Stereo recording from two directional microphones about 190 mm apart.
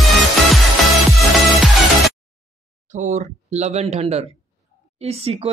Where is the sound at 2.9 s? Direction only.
40° right (ahead or behind).